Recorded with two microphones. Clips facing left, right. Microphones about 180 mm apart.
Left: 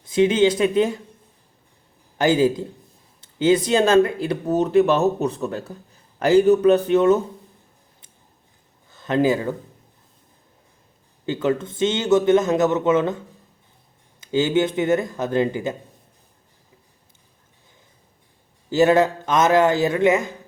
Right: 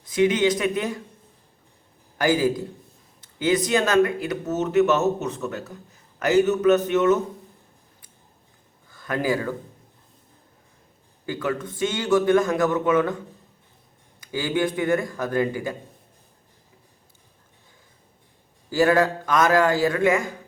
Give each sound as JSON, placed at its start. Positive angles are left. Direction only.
{"t": 0.0, "sound": "a man's voice", "side_deg": 25}
{"t": 2.1, "sound": "a man's voice", "side_deg": 25}
{"t": 8.9, "sound": "speech", "side_deg": 25}
{"t": 11.3, "sound": "a man's voice", "side_deg": 25}
{"t": 14.2, "sound": "a man's voice", "side_deg": 25}
{"t": 18.7, "sound": "a man's voice", "side_deg": 20}